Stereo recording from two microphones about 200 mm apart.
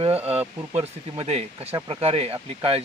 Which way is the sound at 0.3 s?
30° right (ahead or behind).